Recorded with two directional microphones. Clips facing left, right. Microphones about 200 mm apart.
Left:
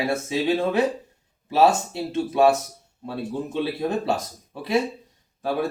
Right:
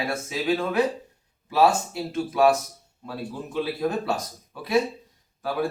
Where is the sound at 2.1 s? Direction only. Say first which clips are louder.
Left 2 dB; 25° left (ahead or behind).